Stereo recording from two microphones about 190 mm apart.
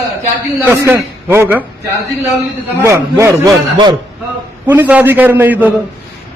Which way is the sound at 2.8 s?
15° right (ahead or behind).